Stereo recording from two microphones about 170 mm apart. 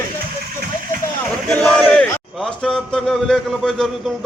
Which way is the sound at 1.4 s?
5° left (ahead or behind).